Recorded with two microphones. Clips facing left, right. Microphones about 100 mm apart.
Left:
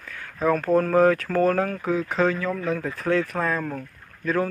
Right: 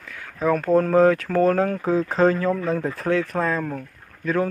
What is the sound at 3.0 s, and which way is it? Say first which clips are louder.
Speech: right 1 dB; 15° right (ahead or behind).